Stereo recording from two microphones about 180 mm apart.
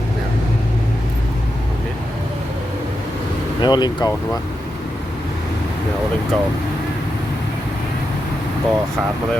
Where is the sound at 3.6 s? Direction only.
25° left (ahead or behind).